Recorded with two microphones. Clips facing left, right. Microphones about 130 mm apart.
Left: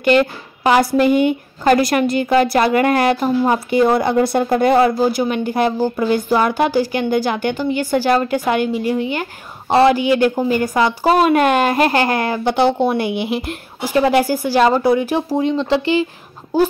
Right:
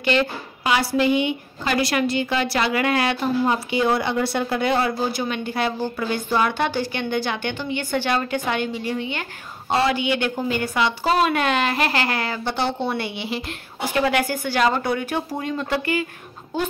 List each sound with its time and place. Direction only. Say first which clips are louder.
0.0 s a woman's voice: left 7 dB; 50° left (ahead or behind)
14.1 s a woman's voice: left 7 dB; 35° left (ahead or behind)